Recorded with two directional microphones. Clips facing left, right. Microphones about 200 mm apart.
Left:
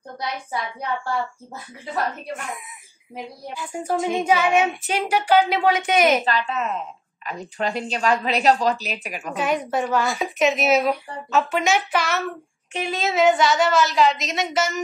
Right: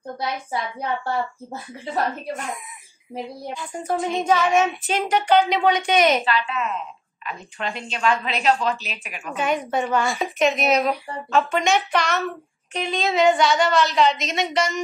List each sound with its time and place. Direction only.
0.5 s speech: 25° right (ahead or behind)
3.5 s speech: 10° left (ahead or behind)
6.2 s a woman's voice: 40° left (ahead or behind)
9.3 s a woman's voice: centre (ahead or behind)